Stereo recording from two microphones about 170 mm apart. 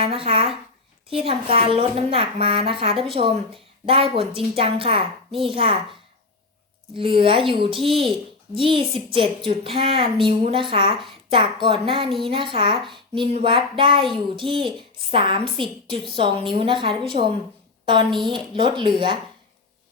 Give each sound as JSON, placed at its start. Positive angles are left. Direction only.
{"t": 0.0, "sound": "a woman's voice", "side_deg": -35}
{"t": 6.9, "sound": "a woman's voice", "side_deg": -30}